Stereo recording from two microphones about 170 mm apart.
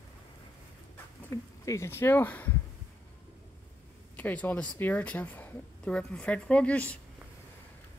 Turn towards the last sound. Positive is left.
turn(degrees=10)  # may be behind; listen again after turning